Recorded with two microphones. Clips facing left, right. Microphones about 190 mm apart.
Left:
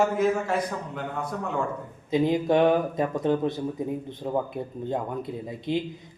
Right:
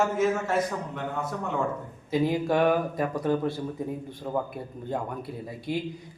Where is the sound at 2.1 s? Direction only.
20° left (ahead or behind).